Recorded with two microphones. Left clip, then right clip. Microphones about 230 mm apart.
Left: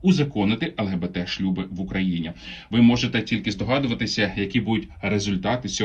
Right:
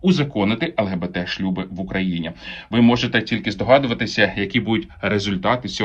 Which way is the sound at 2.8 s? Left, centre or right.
Centre.